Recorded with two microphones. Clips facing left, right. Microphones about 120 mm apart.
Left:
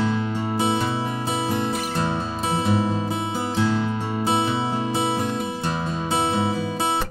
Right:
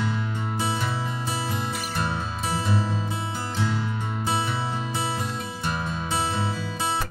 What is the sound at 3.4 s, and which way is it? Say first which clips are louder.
Music: left 6 dB; 70° left (ahead or behind).